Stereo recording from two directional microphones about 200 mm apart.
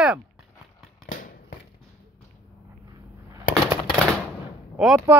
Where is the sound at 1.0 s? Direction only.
45° left (ahead or behind).